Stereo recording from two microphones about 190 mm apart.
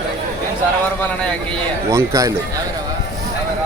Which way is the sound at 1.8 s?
15° right (ahead or behind).